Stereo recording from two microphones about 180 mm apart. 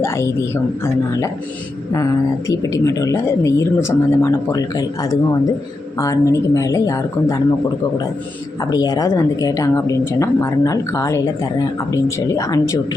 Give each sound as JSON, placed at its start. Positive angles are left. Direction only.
{"t": 0.0, "sound": "speech", "side_deg": 15}
{"t": 2.5, "sound": "speech", "side_deg": 20}
{"t": 8.7, "sound": "speech", "side_deg": 20}